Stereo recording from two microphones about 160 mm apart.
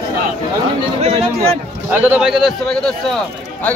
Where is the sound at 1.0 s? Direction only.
40° right (ahead or behind).